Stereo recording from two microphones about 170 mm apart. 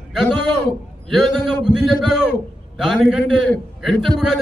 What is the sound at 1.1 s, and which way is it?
A man's voice, centre (ahead or behind).